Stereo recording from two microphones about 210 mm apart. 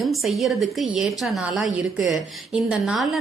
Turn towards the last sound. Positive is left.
turn(degrees=0)  # may be behind; listen again after turning